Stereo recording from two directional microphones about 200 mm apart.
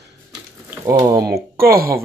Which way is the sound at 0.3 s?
15° right (ahead or behind).